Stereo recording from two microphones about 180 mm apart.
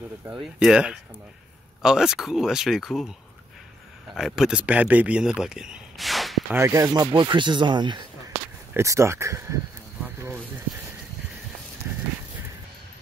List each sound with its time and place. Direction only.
0.2 s speech: 5° right (ahead or behind)
4.2 s speech: 5° right (ahead or behind)
6.5 s speech: 15° right (ahead or behind)
11.9 s horse: 10° right (ahead or behind)